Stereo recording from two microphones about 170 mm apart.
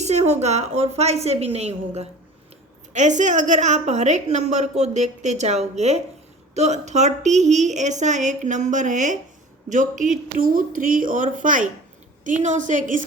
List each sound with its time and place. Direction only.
0.0 s a woman's voice: 40° right (ahead or behind)